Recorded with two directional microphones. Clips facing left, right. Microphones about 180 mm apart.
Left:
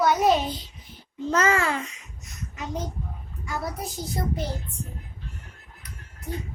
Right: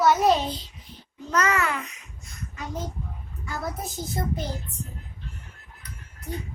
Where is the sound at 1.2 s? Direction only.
25° left (ahead or behind).